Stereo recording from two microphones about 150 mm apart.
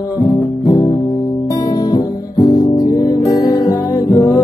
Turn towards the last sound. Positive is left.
turn(degrees=30)  # may be behind; listen again after turning